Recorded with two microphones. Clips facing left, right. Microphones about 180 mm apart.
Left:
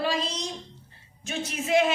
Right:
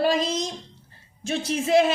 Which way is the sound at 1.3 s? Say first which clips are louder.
Right 4 dB; 30° right (ahead or behind).